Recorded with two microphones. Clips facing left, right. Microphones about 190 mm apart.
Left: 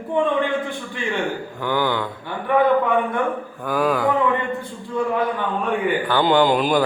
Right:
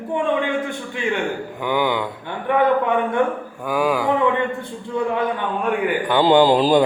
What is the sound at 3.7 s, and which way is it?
Speech, 5° right (ahead or behind).